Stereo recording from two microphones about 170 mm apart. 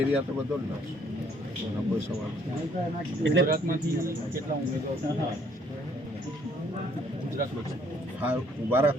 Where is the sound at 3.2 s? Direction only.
85° right.